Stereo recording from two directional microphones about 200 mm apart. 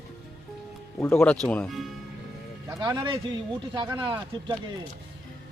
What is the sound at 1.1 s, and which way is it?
Speech, 5° left (ahead or behind).